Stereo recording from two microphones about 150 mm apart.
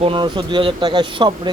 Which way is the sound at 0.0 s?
35° right (ahead or behind).